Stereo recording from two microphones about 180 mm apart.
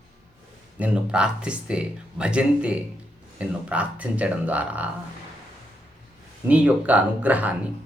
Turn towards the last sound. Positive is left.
turn(degrees=-10)  # may be behind; listen again after turning